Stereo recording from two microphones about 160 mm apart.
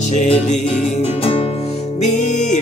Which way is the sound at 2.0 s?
50° left (ahead or behind).